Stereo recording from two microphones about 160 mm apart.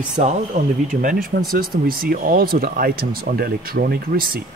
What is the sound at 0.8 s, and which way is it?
Speech, 60° right (ahead or behind).